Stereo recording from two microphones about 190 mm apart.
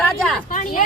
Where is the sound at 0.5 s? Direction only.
45° left (ahead or behind).